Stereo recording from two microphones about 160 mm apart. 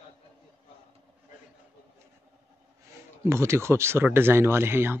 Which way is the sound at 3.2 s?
15° right (ahead or behind).